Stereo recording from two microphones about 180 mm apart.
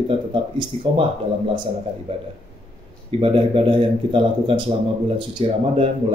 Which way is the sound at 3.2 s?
30° right (ahead or behind).